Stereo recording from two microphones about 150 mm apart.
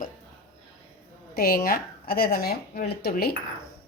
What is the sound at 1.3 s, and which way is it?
Speech, 85° left.